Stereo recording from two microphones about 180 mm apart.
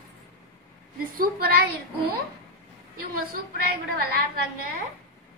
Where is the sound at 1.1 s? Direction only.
60° right (ahead or behind).